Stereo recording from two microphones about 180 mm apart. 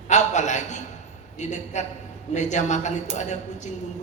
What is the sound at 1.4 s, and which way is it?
Speech, 40° left (ahead or behind).